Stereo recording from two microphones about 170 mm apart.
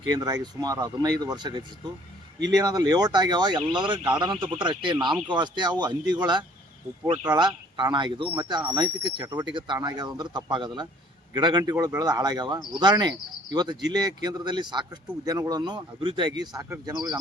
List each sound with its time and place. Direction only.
0.1 s speech: 25° right (ahead or behind)